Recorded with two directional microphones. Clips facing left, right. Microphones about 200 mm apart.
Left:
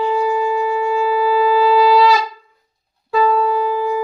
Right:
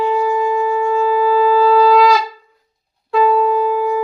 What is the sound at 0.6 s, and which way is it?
Wind instrument, 10° left (ahead or behind).